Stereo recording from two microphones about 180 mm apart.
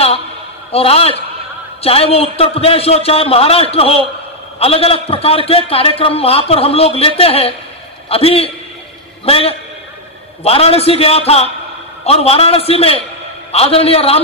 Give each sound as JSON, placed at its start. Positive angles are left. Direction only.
{"t": 0.7, "sound": "a man's voice", "side_deg": 35}